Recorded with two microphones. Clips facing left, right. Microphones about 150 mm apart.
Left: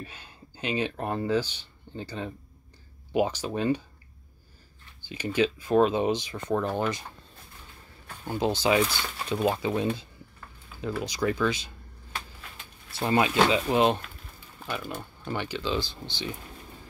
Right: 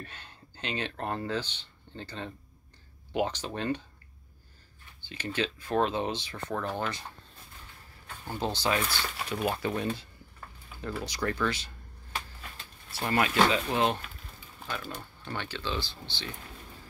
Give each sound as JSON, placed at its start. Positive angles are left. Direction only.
{"t": 0.0, "sound": "speech", "side_deg": 10}
{"t": 5.0, "sound": "speech", "side_deg": 10}
{"t": 8.5, "sound": "speech", "side_deg": 15}
{"t": 12.9, "sound": "speech", "side_deg": 20}